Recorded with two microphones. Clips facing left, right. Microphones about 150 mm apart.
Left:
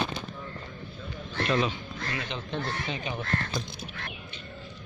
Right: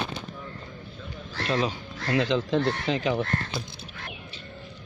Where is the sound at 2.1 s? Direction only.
90° right.